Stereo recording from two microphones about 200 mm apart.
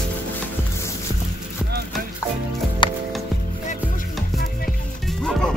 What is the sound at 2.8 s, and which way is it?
Music, 25° left (ahead or behind).